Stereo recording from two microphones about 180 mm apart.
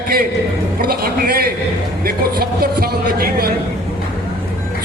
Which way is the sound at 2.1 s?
55° right (ahead or behind).